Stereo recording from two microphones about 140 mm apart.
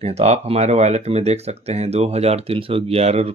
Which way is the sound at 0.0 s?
50° right (ahead or behind).